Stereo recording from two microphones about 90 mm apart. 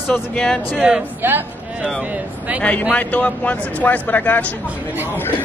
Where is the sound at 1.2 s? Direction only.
20° right (ahead or behind).